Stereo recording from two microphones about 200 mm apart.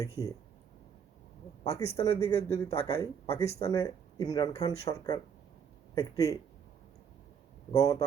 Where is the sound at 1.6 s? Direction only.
30° left (ahead or behind).